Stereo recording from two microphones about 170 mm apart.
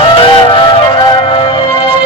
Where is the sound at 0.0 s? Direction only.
30° left (ahead or behind).